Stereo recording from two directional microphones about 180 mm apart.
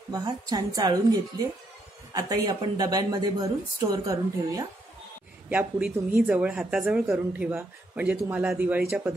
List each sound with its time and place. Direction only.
0.1 s speech: 20° right (ahead or behind)
5.5 s a woman's voice: 10° right (ahead or behind)